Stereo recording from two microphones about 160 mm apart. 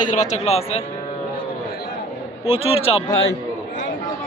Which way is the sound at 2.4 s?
40° left (ahead or behind).